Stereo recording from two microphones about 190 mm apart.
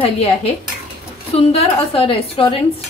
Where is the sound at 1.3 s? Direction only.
30° left (ahead or behind).